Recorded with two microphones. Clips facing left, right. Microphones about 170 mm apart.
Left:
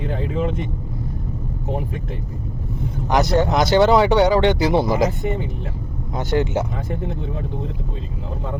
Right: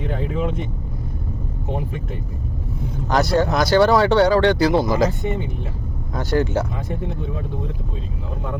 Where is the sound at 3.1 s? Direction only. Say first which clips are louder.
Left 1 dB; 20° left (ahead or behind).